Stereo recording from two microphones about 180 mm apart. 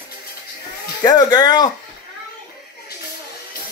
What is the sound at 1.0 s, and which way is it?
Speech, 20° left (ahead or behind).